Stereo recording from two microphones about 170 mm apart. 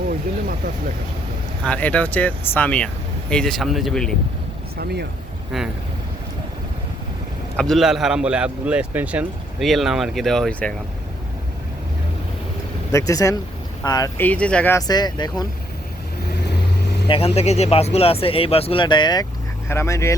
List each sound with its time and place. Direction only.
1.6 s a man's voice: 5° left (ahead or behind)
4.8 s speech: 70° right (ahead or behind)
5.5 s a man's voice: centre (ahead or behind)
7.5 s a man's voice: 5° left (ahead or behind)
12.9 s speech: 20° left (ahead or behind)
14.2 s speech: 10° left (ahead or behind)
14.8 s speech: 25° left (ahead or behind)
17.1 s speech: 35° left (ahead or behind); by 20.1 s 15° left (ahead or behind)